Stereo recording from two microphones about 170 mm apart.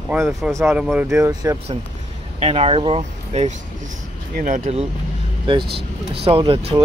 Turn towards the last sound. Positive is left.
turn(degrees=-35)  # may be behind; listen again after turning